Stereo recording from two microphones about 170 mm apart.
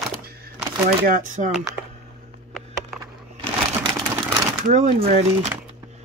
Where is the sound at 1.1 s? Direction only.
50° right (ahead or behind).